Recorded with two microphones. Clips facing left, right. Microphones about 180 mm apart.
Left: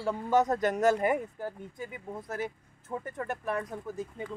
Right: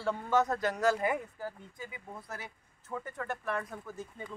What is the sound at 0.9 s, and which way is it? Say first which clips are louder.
Speech: left 4 dB; 50° left (ahead or behind).